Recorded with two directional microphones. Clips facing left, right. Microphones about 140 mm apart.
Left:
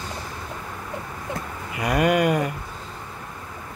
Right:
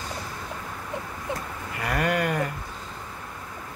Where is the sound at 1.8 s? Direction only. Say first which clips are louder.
Left 6 dB; 15° left (ahead or behind).